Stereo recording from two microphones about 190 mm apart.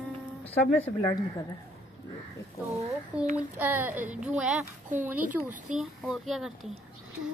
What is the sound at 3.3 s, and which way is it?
A child's voice, 10° right (ahead or behind).